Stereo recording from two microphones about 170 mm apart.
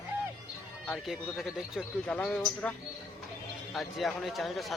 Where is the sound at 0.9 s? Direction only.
Centre (ahead or behind).